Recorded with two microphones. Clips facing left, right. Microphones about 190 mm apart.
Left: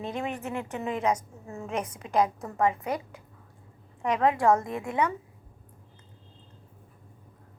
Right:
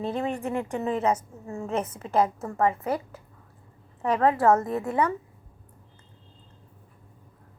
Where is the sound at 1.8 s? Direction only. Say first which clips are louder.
Right 1 dB; 15° left (ahead or behind).